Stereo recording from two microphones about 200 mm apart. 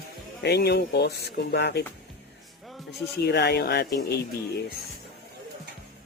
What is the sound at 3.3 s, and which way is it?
Speech, 55° left (ahead or behind).